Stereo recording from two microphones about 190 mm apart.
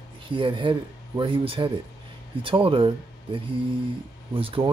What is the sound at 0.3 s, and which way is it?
Speech, 25° right (ahead or behind).